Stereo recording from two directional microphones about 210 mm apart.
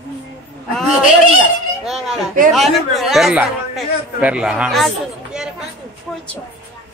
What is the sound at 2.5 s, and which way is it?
A man's voice, centre (ahead or behind).